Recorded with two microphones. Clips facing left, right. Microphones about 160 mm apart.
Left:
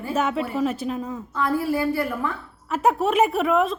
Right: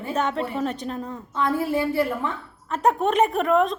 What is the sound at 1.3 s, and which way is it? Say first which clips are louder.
Speech: even; 25° right (ahead or behind).